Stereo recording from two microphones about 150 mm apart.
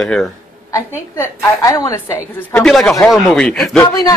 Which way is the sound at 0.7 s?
20° left (ahead or behind).